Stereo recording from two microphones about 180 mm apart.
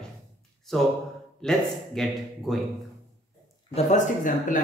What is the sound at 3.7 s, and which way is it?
Speech, 45° left (ahead or behind).